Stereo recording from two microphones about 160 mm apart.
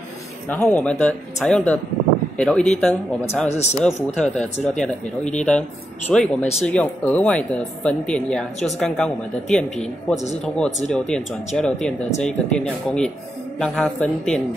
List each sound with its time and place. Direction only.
0.5 s speech: 10° left (ahead or behind)
3.4 s speech: 45° left (ahead or behind)
3.8 s speech: 5° left (ahead or behind)